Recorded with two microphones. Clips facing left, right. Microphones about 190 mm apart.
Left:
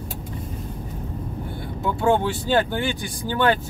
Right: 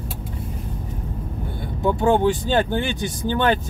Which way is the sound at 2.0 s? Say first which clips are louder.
Right 2 dB; 15° right (ahead or behind).